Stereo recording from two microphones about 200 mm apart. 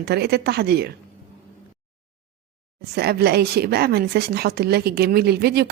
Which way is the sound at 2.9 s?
50° right (ahead or behind).